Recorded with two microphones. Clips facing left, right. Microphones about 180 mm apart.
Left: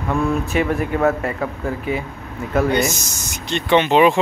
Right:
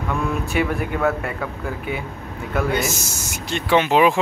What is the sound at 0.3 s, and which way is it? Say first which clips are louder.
Speech: left 3 dB; 5° right (ahead or behind).